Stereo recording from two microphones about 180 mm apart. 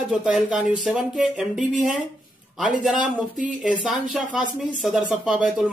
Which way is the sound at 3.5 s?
5° right (ahead or behind).